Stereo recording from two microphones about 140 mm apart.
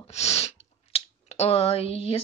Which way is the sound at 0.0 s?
50° left (ahead or behind).